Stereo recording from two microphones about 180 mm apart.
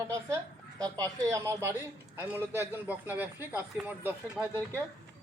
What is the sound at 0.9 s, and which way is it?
Speech, 20° right (ahead or behind).